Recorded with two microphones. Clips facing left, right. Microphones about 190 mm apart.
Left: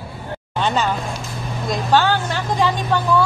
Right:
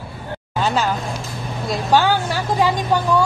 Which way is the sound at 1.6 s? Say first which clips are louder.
Even; 10° right (ahead or behind).